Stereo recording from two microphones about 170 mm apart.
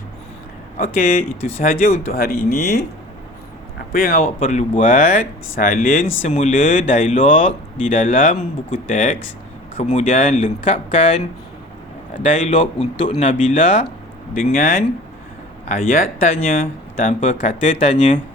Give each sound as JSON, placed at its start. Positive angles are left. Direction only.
{"t": 0.8, "sound": "speech", "side_deg": 55}
{"t": 1.6, "sound": "speech", "side_deg": 40}
{"t": 2.1, "sound": "speech", "side_deg": 60}
{"t": 3.9, "sound": "speech", "side_deg": 60}
{"t": 4.2, "sound": "speech", "side_deg": 45}
{"t": 12.1, "sound": "speech", "side_deg": 45}